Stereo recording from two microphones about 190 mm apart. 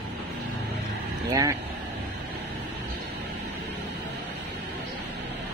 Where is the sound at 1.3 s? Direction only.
15° right (ahead or behind).